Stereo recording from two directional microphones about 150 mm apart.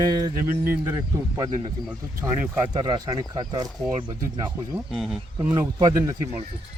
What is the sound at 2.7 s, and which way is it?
Speech, 30° right (ahead or behind).